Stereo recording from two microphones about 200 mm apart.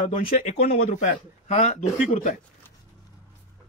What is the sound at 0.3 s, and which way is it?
A man's voice, 40° left (ahead or behind).